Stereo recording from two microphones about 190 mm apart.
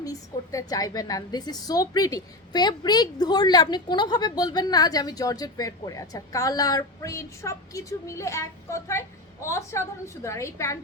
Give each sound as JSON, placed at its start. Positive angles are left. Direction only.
{"t": 0.0, "sound": "a woman's voice", "side_deg": 20}